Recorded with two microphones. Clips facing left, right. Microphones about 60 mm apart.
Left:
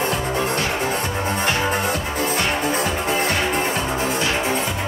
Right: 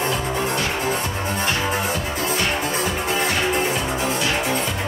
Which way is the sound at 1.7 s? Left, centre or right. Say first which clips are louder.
Left 1 dB; left.